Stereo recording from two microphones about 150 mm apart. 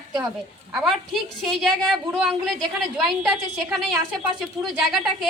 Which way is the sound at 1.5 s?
Centre (ahead or behind).